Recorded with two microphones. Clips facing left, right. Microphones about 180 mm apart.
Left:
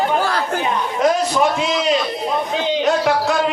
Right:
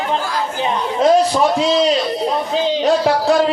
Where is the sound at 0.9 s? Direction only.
30° right (ahead or behind).